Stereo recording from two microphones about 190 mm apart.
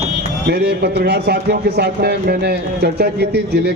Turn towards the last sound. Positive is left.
turn(degrees=-55)  # may be behind; listen again after turning